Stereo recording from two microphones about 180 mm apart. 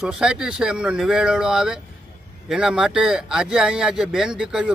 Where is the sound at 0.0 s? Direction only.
5° right (ahead or behind).